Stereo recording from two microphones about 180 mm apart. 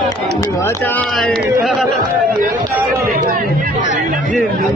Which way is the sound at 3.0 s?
50° right (ahead or behind).